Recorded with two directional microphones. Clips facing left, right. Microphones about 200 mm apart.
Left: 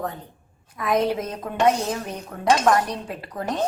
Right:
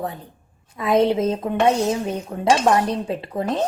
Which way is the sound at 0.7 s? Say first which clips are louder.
Right 4 dB; 25° right (ahead or behind).